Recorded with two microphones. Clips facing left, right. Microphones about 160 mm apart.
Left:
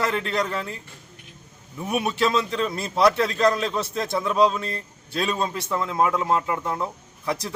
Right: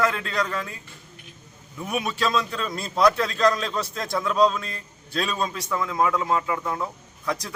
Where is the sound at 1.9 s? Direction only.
20° left (ahead or behind).